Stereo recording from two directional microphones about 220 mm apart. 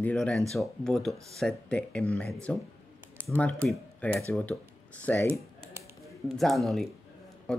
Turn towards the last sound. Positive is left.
turn(degrees=5)  # may be behind; listen again after turning